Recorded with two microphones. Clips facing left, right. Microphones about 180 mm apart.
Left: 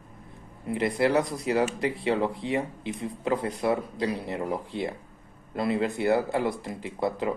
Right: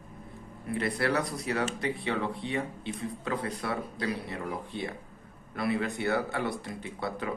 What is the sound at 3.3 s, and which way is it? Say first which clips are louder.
Speech: left 8 dB; 25° left (ahead or behind).